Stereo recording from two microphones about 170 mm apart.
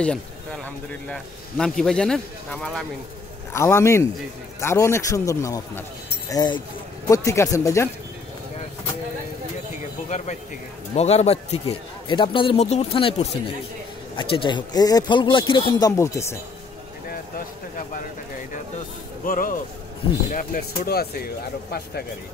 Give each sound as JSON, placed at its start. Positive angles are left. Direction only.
{"t": 1.0, "sound": "a man's voice", "side_deg": 5}
{"t": 3.5, "sound": "a man's voice", "side_deg": 15}
{"t": 10.0, "sound": "a man's voice", "side_deg": 45}
{"t": 16.0, "sound": "a man's voice", "side_deg": 15}
{"t": 19.2, "sound": "speech", "side_deg": 55}